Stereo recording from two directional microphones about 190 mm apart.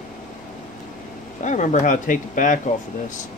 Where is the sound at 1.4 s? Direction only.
40° left (ahead or behind).